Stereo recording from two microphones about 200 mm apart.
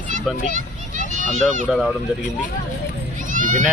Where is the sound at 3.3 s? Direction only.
40° right (ahead or behind).